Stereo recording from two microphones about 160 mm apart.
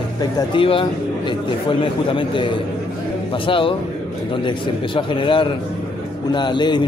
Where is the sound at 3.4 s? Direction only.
35° left (ahead or behind).